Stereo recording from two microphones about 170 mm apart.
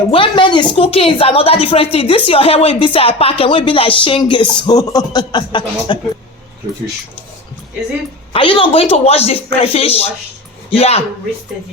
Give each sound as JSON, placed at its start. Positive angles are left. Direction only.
{"t": 0.1, "sound": "speech", "side_deg": 30}
{"t": 8.3, "sound": "speech", "side_deg": 30}